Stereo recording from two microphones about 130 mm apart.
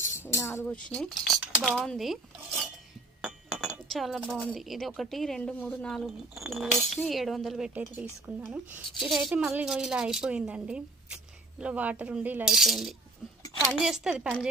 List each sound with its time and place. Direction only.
0.1 s speech: 20° left (ahead or behind); by 2.1 s centre (ahead or behind)
3.2 s chink: 5° right (ahead or behind)
3.9 s speech: centre (ahead or behind)
7.7 s speech: 15° right (ahead or behind)
9.0 s speech: centre (ahead or behind)
12.5 s speech: centre (ahead or behind)